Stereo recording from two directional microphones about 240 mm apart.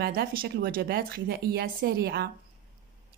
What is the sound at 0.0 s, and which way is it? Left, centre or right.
Speech, right.